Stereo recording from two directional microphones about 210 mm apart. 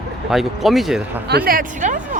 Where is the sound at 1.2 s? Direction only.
50° right (ahead or behind).